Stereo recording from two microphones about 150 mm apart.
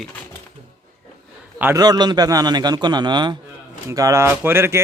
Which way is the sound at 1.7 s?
25° right (ahead or behind).